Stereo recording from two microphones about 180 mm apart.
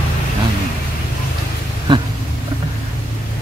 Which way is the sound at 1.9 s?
25° right (ahead or behind).